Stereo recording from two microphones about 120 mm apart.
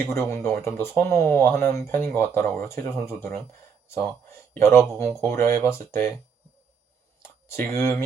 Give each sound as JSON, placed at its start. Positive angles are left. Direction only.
{"t": 0.1, "sound": "speech", "side_deg": 20}
{"t": 4.5, "sound": "speech", "side_deg": 25}
{"t": 7.4, "sound": "speech", "side_deg": 20}